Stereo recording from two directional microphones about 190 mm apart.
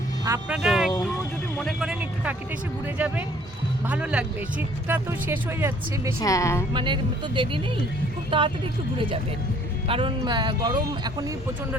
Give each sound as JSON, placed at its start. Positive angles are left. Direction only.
{"t": 0.3, "sound": "speech", "side_deg": -5}
{"t": 6.1, "sound": "speech", "side_deg": 15}
{"t": 6.7, "sound": "speech", "side_deg": -25}
{"t": 9.9, "sound": "speech", "side_deg": -25}